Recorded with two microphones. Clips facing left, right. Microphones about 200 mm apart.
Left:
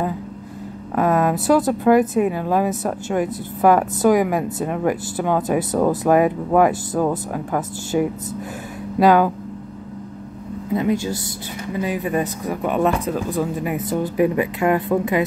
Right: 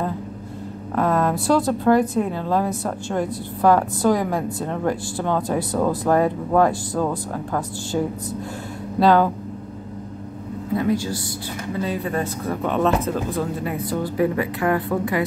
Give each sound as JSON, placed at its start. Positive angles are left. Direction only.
{"t": 0.9, "sound": "a woman's voice", "side_deg": 15}
{"t": 10.7, "sound": "a woman's voice", "side_deg": 20}